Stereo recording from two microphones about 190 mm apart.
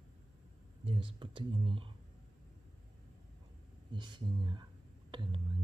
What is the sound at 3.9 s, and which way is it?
Speech, 25° right (ahead or behind).